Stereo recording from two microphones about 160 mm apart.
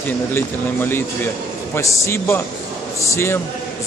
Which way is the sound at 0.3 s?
15° left (ahead or behind).